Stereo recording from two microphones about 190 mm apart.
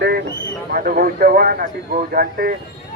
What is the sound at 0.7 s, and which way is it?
Speech, 50° right (ahead or behind).